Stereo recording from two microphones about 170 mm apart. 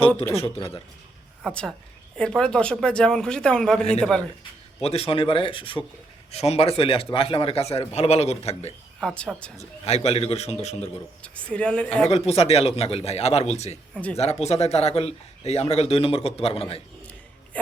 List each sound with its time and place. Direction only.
0.3 s speech: 35° left (ahead or behind)
1.5 s speech: 5° left (ahead or behind)
4.8 s speech: 35° left (ahead or behind)
9.0 s speech: 5° left (ahead or behind)
9.6 s speech: 40° left (ahead or behind)
11.2 s a woman's voice: 5° left (ahead or behind)
12.1 s speech: 35° left (ahead or behind)
13.9 s speech: 5° left (ahead or behind)
14.2 s speech: 40° left (ahead or behind)